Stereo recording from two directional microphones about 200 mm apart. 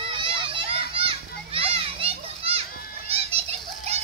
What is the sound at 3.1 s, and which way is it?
Pigeon, 30° right (ahead or behind).